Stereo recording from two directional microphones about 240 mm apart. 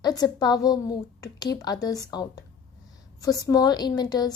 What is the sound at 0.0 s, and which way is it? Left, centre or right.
A woman's voice, centre.